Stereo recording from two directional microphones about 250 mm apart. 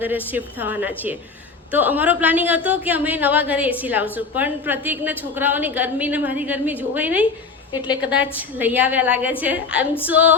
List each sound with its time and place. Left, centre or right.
0.3 s a woman's voice: centre
7.7 s a woman's voice: centre
8.0 s a woman's voice: centre